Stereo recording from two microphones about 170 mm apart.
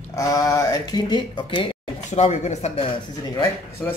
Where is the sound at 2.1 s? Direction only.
40° left (ahead or behind).